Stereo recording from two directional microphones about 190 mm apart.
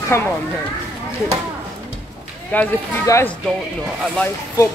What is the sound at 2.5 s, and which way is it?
Speech, 10° left (ahead or behind).